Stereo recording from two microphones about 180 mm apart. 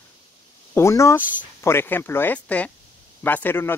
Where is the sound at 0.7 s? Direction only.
15° left (ahead or behind).